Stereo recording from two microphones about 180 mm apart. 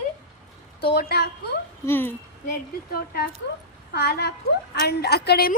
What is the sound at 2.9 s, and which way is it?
A woman's voice, 60° left (ahead or behind).